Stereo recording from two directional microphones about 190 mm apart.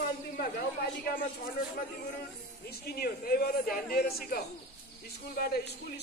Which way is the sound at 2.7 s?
55° left (ahead or behind).